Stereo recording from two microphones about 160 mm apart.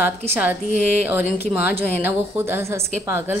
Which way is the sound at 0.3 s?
10° right (ahead or behind).